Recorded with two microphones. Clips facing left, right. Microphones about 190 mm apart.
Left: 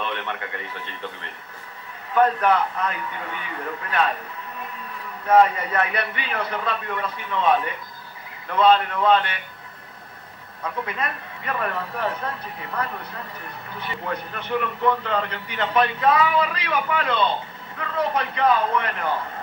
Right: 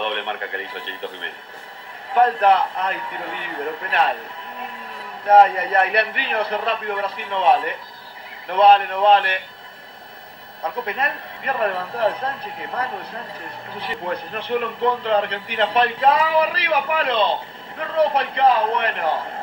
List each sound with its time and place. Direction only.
0.0 s a man's voice: 30° right (ahead or behind)
2.1 s a man's voice: 30° right (ahead or behind)
5.2 s a man's voice: 30° right (ahead or behind)
10.6 s a man's voice: 30° right (ahead or behind)
13.7 s a man's voice: 30° right (ahead or behind)